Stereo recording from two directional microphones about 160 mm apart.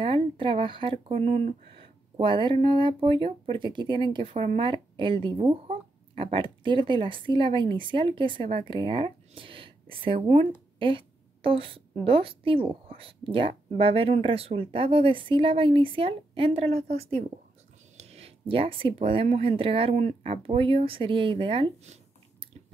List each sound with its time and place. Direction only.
0.0 s speech: 35° right (ahead or behind)
2.1 s a woman's voice: 30° right (ahead or behind)